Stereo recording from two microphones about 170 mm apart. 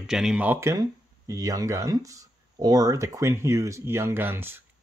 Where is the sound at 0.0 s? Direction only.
5° right (ahead or behind).